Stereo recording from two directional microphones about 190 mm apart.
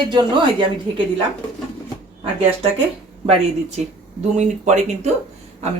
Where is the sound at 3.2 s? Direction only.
35° right (ahead or behind).